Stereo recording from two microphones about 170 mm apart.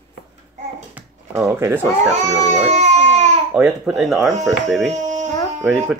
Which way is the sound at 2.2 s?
45° right (ahead or behind).